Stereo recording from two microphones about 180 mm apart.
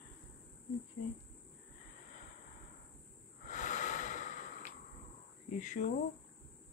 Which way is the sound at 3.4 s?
45° left (ahead or behind).